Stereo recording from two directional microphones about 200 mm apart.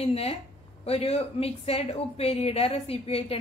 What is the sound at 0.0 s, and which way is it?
A woman's voice, 30° left (ahead or behind).